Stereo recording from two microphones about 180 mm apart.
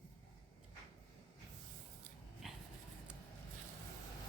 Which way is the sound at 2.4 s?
Centre (ahead or behind).